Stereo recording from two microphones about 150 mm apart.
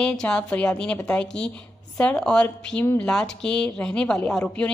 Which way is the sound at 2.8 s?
15° left (ahead or behind).